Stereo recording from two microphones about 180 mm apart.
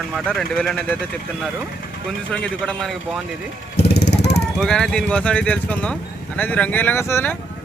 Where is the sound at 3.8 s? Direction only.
65° left (ahead or behind).